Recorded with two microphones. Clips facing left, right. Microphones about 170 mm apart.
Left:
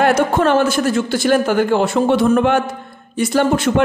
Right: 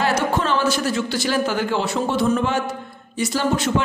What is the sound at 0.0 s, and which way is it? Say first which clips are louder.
A man's voice: left 6 dB; 55° left (ahead or behind).